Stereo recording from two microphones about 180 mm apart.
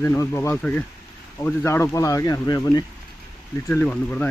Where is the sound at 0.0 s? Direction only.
15° left (ahead or behind).